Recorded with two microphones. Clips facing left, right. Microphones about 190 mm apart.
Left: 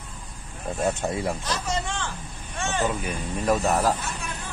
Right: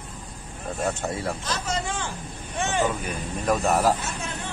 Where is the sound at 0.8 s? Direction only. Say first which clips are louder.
Left 2 dB; 15° left (ahead or behind).